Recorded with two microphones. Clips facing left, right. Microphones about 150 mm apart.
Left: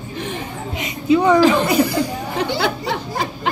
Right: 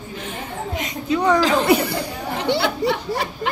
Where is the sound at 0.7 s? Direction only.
5° left (ahead or behind).